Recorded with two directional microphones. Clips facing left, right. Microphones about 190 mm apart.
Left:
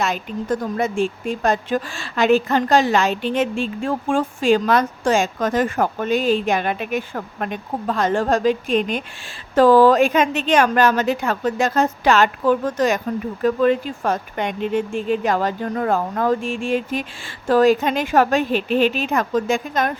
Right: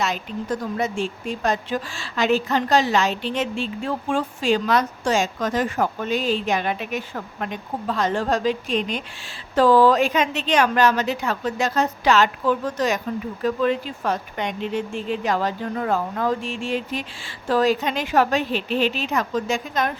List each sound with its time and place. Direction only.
0.0 s speech: 50° left (ahead or behind)